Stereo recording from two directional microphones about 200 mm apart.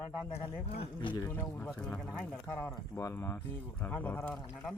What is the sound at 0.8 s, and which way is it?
Speech, 25° left (ahead or behind).